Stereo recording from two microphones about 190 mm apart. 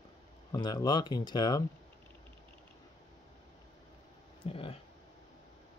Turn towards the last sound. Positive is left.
turn(degrees=30)  # may be behind; listen again after turning